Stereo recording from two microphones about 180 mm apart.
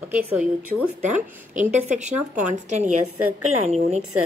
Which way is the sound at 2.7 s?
40° right (ahead or behind).